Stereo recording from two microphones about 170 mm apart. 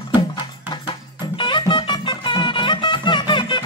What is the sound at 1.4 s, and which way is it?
Music, 25° left (ahead or behind).